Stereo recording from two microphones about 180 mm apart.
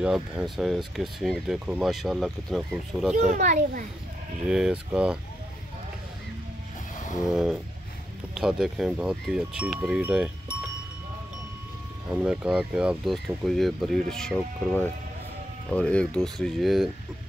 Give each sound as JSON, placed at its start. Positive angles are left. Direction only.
{"t": 0.0, "sound": "speech", "side_deg": -5}
{"t": 3.3, "sound": "a child's voice", "side_deg": -45}
{"t": 4.5, "sound": "speech", "side_deg": -5}
{"t": 7.2, "sound": "speech", "side_deg": -5}
{"t": 12.1, "sound": "speech", "side_deg": -5}